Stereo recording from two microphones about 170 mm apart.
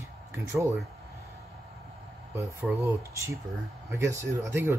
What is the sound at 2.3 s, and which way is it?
Speech, 15° right (ahead or behind).